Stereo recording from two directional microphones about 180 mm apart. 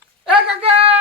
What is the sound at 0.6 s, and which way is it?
Speech, 30° right (ahead or behind).